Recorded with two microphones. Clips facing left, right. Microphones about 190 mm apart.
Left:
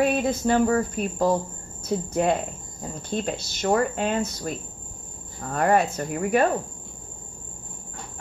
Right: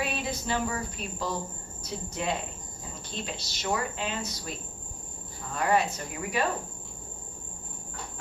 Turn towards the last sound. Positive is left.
turn(degrees=50)  # may be behind; listen again after turning